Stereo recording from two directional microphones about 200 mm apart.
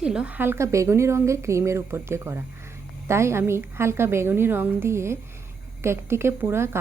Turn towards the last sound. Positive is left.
turn(degrees=-10)  # may be behind; listen again after turning